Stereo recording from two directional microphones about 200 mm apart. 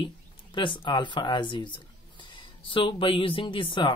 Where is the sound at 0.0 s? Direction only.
25° left (ahead or behind).